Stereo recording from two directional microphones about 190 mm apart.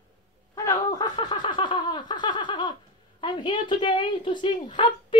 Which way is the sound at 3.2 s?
25° left (ahead or behind).